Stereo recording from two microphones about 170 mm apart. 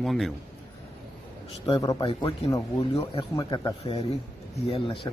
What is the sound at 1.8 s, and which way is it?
Speech, 20° left (ahead or behind).